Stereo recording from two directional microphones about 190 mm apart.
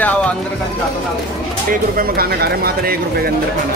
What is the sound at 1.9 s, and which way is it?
Speech, 50° right (ahead or behind).